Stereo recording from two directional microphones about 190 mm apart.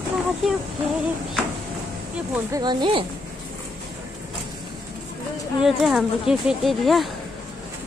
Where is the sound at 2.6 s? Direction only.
25° right (ahead or behind).